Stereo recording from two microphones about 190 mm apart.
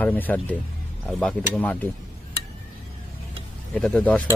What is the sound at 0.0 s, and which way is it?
Speech, 10° left (ahead or behind).